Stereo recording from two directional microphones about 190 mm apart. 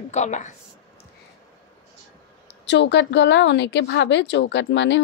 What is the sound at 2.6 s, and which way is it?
A woman's voice, 65° left (ahead or behind).